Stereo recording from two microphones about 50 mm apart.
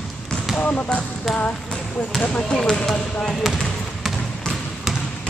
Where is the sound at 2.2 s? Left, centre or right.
Left.